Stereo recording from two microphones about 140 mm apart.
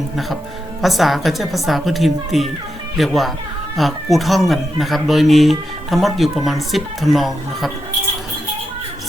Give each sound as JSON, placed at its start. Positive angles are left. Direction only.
{"t": 0.8, "sound": "speech", "side_deg": 0}